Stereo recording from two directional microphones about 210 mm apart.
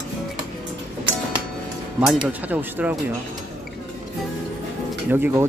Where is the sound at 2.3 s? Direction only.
5° right (ahead or behind).